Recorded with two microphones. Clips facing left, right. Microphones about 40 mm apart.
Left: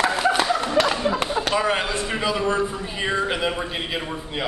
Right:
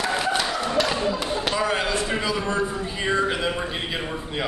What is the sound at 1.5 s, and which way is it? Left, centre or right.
A man's voice, centre.